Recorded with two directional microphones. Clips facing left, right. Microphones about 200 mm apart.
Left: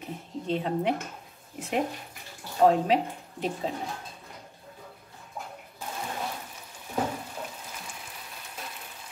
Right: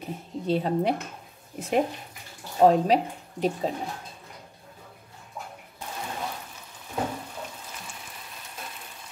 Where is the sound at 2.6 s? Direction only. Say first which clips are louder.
Right 2 dB; 40° right (ahead or behind).